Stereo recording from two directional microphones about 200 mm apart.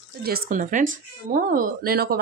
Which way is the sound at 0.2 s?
45° right (ahead or behind).